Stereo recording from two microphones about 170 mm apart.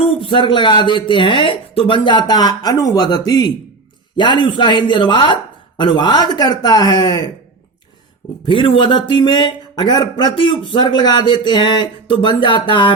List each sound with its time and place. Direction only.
0.0 s speech: 30° left (ahead or behind)
8.4 s speech: 30° left (ahead or behind)